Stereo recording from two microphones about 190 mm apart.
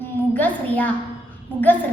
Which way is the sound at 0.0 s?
10° left (ahead or behind).